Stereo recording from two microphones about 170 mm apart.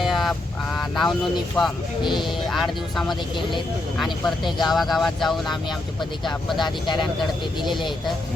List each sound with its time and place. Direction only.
0.0 s fowl: centre (ahead or behind)
1.6 s speech: centre (ahead or behind)
2.0 s speech: 25° left (ahead or behind)
2.5 s speech: centre (ahead or behind)
6.6 s speech: 25° left (ahead or behind)